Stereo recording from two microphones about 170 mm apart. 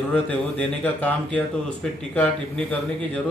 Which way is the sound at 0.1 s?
10° left (ahead or behind).